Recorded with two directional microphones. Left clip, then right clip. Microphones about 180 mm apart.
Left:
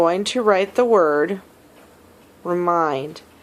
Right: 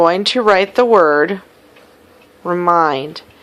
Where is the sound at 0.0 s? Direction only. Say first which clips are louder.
Right 5 dB; 20° right (ahead or behind).